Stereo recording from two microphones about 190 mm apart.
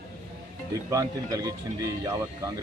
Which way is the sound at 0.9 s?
20° right (ahead or behind).